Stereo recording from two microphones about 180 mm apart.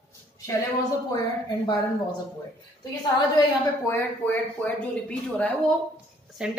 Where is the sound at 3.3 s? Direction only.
15° left (ahead or behind).